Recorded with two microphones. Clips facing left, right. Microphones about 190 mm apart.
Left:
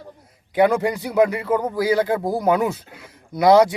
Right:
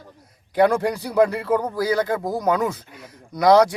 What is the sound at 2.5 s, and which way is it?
Speech, 5° left (ahead or behind).